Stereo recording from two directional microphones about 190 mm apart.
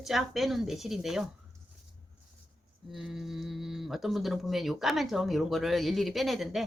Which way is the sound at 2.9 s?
Centre (ahead or behind).